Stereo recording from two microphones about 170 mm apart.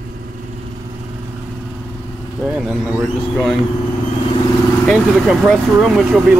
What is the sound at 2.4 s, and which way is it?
Speech, 5° right (ahead or behind).